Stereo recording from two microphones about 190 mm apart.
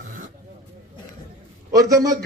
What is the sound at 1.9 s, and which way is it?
Speech, 20° right (ahead or behind).